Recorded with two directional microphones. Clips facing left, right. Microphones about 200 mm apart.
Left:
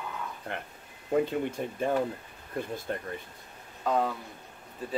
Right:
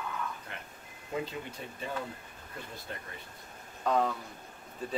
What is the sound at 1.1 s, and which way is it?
Speech, 50° left (ahead or behind).